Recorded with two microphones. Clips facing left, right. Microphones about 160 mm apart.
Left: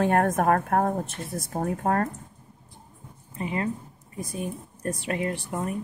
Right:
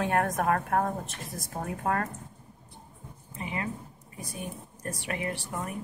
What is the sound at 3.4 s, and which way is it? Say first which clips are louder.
Speech: left 6 dB; 35° left (ahead or behind).